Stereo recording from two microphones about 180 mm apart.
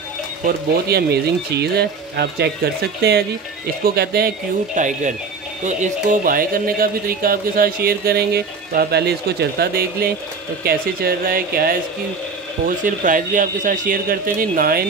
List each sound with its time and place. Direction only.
0.4 s speech: 55° right (ahead or behind)
4.7 s speech: 45° right (ahead or behind)